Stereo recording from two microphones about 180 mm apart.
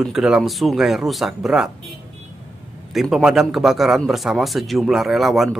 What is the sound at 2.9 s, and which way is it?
Speech, centre (ahead or behind).